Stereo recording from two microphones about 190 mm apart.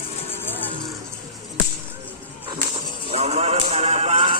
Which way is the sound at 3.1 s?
35° right (ahead or behind).